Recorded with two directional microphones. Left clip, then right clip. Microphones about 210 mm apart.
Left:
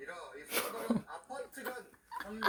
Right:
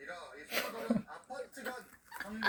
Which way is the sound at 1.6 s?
15° left (ahead or behind).